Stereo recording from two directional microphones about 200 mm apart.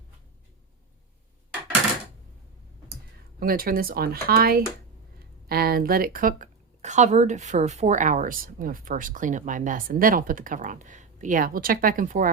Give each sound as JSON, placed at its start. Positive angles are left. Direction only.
{"t": 3.4, "sound": "a woman's voice", "side_deg": -45}